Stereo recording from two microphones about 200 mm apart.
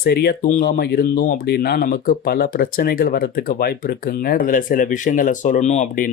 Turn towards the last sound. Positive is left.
turn(degrees=35)  # may be behind; listen again after turning